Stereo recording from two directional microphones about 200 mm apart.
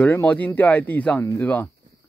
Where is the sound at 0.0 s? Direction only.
10° left (ahead or behind).